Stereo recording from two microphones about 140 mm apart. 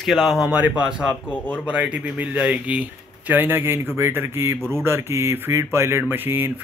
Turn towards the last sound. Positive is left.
turn(degrees=-15)  # may be behind; listen again after turning